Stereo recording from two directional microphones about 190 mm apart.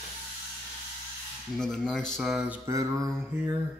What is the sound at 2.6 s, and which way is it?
Speech, 15° right (ahead or behind).